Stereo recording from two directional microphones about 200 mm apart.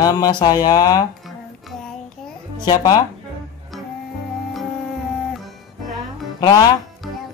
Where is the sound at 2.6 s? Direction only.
20° left (ahead or behind).